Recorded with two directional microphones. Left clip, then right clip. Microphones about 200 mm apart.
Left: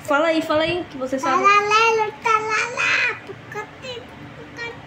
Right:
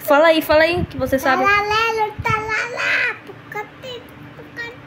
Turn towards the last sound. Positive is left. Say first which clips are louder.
# right 2 dB
turn(degrees=-15)  # may be behind; listen again after turning